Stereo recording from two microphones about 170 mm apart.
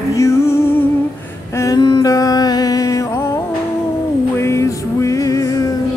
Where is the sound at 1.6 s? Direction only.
25° left (ahead or behind).